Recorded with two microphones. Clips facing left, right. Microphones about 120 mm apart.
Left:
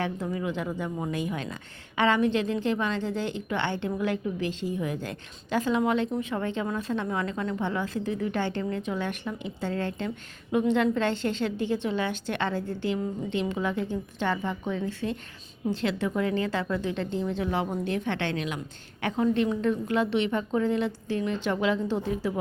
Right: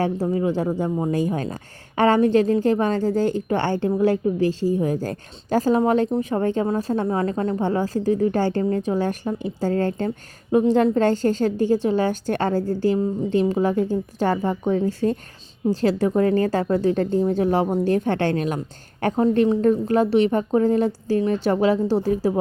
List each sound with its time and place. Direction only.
0.0 s a woman's voice: 35° right (ahead or behind)